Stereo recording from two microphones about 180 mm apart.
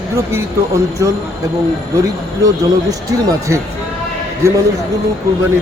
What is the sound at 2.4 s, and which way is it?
Speech, 20° right (ahead or behind).